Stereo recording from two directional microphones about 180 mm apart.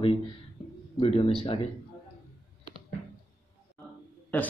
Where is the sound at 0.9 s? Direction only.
30° left (ahead or behind).